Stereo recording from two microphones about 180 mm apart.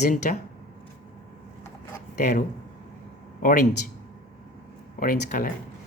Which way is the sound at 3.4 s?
50° left (ahead or behind).